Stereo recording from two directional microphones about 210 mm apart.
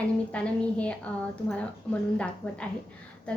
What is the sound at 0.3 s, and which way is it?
A woman's voice, 5° left (ahead or behind).